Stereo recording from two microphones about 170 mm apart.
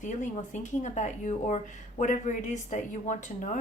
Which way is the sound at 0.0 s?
45° left (ahead or behind).